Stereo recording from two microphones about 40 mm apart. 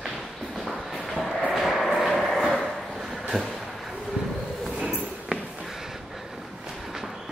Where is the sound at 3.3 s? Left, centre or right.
Centre.